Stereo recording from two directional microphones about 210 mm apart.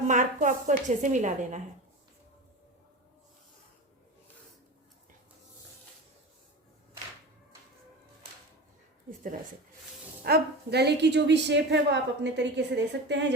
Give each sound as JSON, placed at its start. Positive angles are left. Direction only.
{"t": 0.1, "sound": "a woman's voice", "side_deg": -35}
{"t": 10.2, "sound": "a woman's voice", "side_deg": -50}